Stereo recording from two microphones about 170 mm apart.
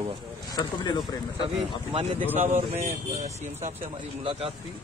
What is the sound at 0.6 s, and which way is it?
Speech, 25° left (ahead or behind).